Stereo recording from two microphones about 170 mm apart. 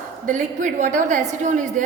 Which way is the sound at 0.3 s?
45° right (ahead or behind).